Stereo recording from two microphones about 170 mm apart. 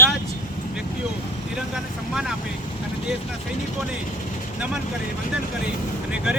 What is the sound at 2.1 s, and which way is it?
Speech, centre (ahead or behind).